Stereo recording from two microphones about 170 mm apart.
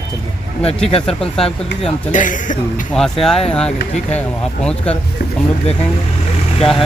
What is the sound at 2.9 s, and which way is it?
Speech, 5° left (ahead or behind).